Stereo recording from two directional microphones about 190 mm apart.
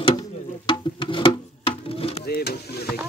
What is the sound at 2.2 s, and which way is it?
Vehicle, 55° left (ahead or behind).